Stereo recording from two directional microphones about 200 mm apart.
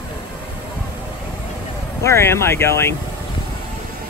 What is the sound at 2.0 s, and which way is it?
Speech, 15° left (ahead or behind).